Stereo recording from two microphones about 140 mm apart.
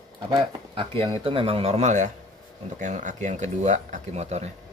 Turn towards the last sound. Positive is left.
turn(degrees=-50)  # may be behind; listen again after turning